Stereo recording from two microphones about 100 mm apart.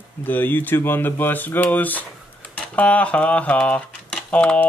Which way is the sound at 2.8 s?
15° left (ahead or behind).